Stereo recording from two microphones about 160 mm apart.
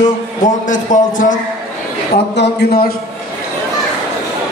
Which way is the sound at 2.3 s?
85° left.